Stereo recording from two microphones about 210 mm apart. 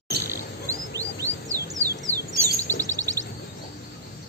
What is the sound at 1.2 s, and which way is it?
Music, 35° left (ahead or behind).